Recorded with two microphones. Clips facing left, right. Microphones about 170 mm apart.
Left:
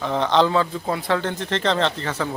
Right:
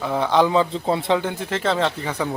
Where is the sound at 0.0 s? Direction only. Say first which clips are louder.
Even; 10° right (ahead or behind); by 1.2 s 25° right (ahead or behind).